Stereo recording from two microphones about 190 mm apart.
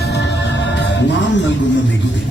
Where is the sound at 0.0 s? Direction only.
60° left (ahead or behind).